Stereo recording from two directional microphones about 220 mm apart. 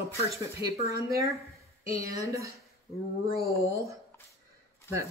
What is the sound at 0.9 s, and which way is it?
Speech, 15° right (ahead or behind).